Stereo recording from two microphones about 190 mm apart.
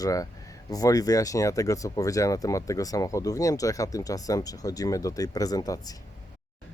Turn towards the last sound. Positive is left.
turn(degrees=20)  # may be behind; listen again after turning